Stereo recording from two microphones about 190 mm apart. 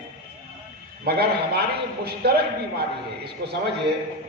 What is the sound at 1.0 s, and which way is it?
Speech, 55° right (ahead or behind).